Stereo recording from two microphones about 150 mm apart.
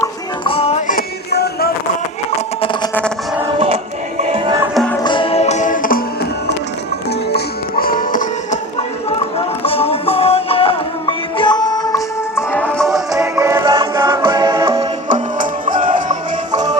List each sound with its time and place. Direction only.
0.4 s music: 40° left (ahead or behind)
0.9 s music: 80° left
4.2 s music: 40° right (ahead or behind)
4.7 s music: 5° left (ahead or behind)
5.0 s music: 35° left (ahead or behind); by 6.0 s 65° left (ahead or behind)
7.3 s music: 75° left (ahead or behind); by 8.5 s 60° left (ahead or behind)
9.6 s music: 40° left (ahead or behind); by 13.1 s centre (ahead or behind)
13.1 s music: 20° right (ahead or behind)
13.7 s music: 30° right (ahead or behind)
15.1 s music: 60° right (ahead or behind)